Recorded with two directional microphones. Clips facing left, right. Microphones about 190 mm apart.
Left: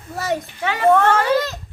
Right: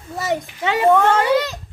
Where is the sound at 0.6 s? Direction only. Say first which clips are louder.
Even; 20° right (ahead or behind).